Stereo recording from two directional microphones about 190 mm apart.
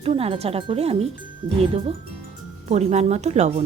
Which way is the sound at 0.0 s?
30° right (ahead or behind).